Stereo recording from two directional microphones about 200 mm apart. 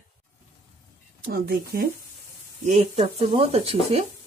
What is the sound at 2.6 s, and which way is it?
Speech, 35° right (ahead or behind).